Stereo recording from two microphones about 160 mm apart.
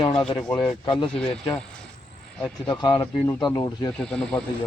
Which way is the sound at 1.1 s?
5° left (ahead or behind).